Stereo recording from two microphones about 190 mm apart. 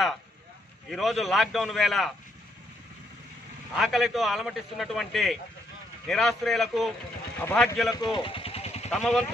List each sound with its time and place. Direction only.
0.8 s a man's voice: centre (ahead or behind)
3.7 s a man's voice: centre (ahead or behind)
7.9 s a sound: 25° left (ahead or behind)
8.9 s a man's voice: centre (ahead or behind)